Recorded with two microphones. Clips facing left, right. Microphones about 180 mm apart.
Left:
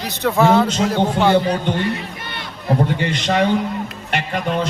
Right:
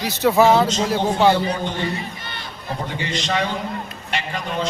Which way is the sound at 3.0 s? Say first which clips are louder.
Left 5 dB; 55° left (ahead or behind).